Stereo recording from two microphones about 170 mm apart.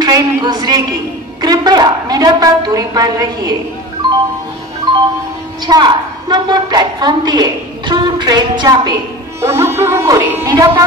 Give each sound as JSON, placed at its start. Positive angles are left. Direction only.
{"t": 0.0, "sound": "a woman's voice", "side_deg": -25}
{"t": 5.7, "sound": "a woman's voice", "side_deg": -25}
{"t": 9.4, "sound": "music", "side_deg": -15}